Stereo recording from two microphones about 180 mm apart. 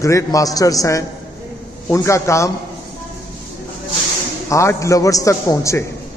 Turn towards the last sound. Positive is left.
turn(degrees=15)  # may be behind; listen again after turning